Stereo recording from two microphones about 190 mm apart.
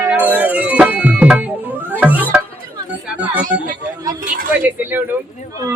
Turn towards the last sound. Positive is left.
turn(degrees=-10)  # may be behind; listen again after turning